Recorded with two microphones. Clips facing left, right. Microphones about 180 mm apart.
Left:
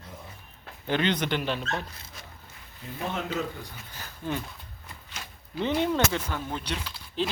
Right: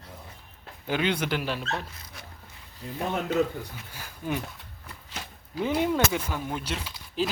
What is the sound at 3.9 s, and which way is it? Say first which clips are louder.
Speech: right 1 dB; 10° right (ahead or behind).